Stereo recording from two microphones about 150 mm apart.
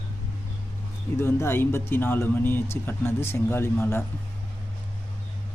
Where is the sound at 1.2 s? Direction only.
15° left (ahead or behind).